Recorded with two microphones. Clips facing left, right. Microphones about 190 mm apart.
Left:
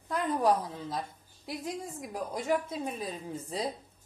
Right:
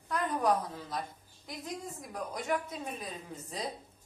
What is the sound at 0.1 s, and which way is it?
Speech, 30° left (ahead or behind).